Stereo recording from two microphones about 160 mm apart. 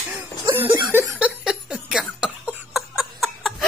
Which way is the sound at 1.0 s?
5° right (ahead or behind).